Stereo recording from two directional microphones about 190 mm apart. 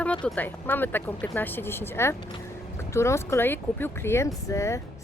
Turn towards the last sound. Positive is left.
turn(degrees=15)  # may be behind; listen again after turning